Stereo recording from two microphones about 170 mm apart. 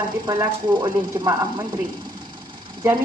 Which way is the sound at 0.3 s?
25° right (ahead or behind).